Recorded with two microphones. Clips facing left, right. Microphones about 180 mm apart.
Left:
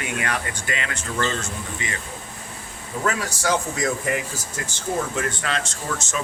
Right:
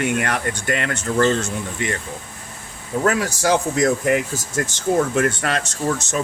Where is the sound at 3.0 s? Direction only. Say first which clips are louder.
Right 5 dB; 55° right (ahead or behind).